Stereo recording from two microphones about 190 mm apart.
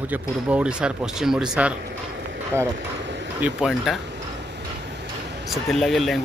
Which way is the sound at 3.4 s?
5° right (ahead or behind).